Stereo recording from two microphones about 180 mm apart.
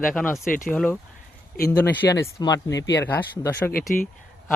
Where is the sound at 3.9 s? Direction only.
50° left (ahead or behind).